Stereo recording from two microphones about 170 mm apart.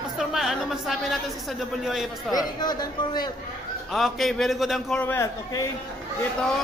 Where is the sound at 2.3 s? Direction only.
25° left (ahead or behind).